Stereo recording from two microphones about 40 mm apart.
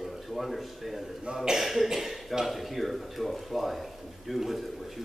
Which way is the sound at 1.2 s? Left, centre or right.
Centre.